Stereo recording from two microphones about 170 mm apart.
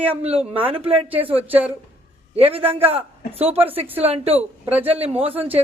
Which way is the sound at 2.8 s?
35° right (ahead or behind).